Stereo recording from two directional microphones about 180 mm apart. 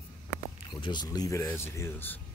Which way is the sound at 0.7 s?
25° left (ahead or behind).